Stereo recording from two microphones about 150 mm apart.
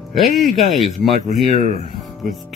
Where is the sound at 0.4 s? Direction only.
55° right (ahead or behind).